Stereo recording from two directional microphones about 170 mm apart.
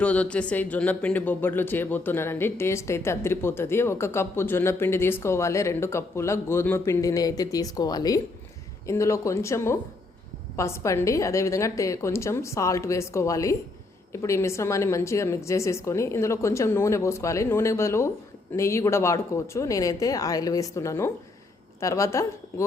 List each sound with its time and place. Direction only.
0.0 s a woman's voice: 5° left (ahead or behind)